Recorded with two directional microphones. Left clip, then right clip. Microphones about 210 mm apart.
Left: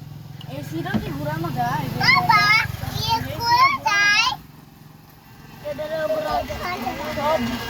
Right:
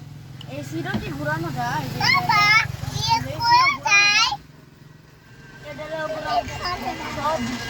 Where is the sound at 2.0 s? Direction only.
20° right (ahead or behind).